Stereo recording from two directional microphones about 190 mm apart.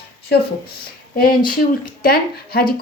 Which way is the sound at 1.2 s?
50° left (ahead or behind).